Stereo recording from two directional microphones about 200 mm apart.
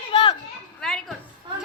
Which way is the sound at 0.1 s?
25° left (ahead or behind).